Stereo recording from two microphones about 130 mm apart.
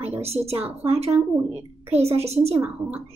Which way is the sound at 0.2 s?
50° right (ahead or behind).